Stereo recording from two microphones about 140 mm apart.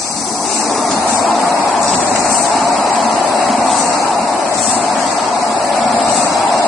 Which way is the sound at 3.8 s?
25° left (ahead or behind).